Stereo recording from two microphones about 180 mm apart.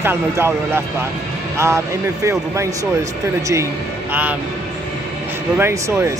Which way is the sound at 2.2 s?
15° right (ahead or behind).